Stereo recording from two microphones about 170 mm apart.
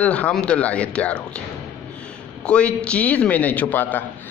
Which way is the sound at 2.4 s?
5° left (ahead or behind).